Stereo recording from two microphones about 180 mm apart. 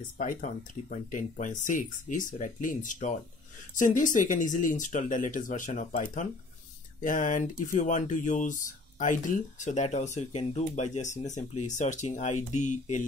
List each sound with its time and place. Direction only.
0.2 s speech: 45° left (ahead or behind)